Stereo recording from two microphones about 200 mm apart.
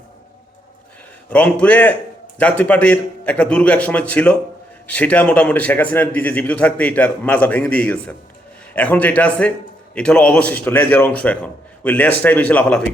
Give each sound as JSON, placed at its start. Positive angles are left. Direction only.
{"t": 1.3, "sound": "a man's voice", "side_deg": 5}